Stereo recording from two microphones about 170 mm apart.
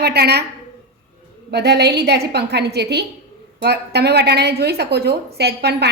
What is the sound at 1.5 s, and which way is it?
A woman's voice, 75° right (ahead or behind).